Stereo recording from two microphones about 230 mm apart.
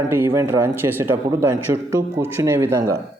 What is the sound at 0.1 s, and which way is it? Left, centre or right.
Speech, centre.